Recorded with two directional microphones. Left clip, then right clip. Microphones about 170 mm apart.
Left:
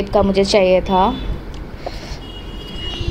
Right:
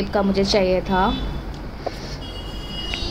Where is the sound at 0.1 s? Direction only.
30° left (ahead or behind).